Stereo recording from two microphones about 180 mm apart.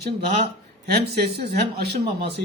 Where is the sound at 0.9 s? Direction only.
60° right (ahead or behind).